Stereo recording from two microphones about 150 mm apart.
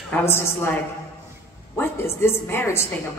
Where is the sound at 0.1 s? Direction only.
15° left (ahead or behind).